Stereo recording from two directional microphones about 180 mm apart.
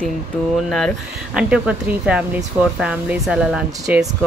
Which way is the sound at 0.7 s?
Centre (ahead or behind).